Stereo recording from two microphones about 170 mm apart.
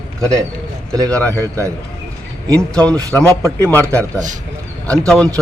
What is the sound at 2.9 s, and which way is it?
A man's voice, 20° right (ahead or behind).